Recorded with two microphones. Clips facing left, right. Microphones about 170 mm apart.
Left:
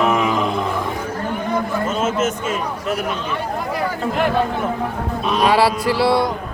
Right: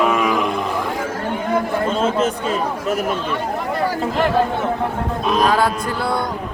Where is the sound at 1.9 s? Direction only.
35° right (ahead or behind).